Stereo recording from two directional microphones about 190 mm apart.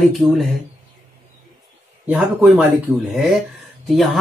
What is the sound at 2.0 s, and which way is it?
Speech, 5° right (ahead or behind).